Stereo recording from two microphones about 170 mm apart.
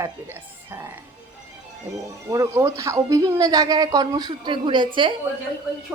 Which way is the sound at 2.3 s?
15° right (ahead or behind).